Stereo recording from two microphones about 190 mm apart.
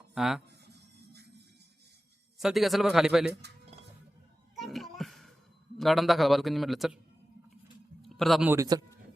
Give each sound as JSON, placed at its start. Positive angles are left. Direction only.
{"t": 0.1, "sound": "speech", "side_deg": 0}
{"t": 2.4, "sound": "a man's voice", "side_deg": 0}
{"t": 4.5, "sound": "music", "side_deg": 0}
{"t": 5.7, "sound": "a man's voice", "side_deg": 0}
{"t": 8.0, "sound": "a sound", "side_deg": 0}
{"t": 8.4, "sound": "a man's voice", "side_deg": -20}